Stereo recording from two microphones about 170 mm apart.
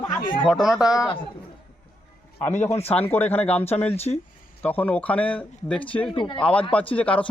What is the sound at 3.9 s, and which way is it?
Speech, 35° left (ahead or behind).